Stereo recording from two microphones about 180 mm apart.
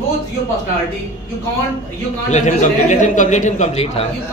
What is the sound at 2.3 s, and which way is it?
Speech, 40° left (ahead or behind).